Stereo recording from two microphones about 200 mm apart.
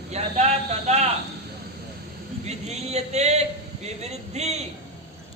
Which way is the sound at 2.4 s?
35° right (ahead or behind).